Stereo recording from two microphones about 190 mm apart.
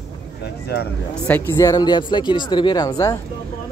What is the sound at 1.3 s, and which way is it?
Speech, 15° left (ahead or behind).